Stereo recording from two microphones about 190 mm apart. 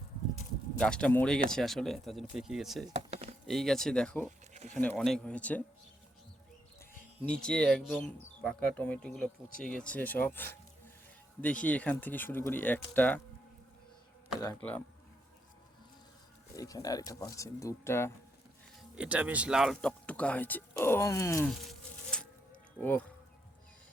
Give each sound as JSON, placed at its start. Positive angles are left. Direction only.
{"t": 0.8, "sound": "speech", "side_deg": 5}
{"t": 2.9, "sound": "a sound", "side_deg": -35}
{"t": 3.4, "sound": "speech", "side_deg": 0}
{"t": 7.3, "sound": "speech", "side_deg": 5}
{"t": 14.6, "sound": "speech", "side_deg": 10}
{"t": 16.6, "sound": "speech", "side_deg": 20}
{"t": 18.9, "sound": "speech", "side_deg": -5}
{"t": 21.5, "sound": "insect", "side_deg": 5}
{"t": 22.8, "sound": "speech", "side_deg": 10}